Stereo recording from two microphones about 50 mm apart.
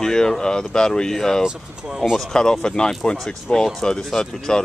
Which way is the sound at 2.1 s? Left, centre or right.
Centre.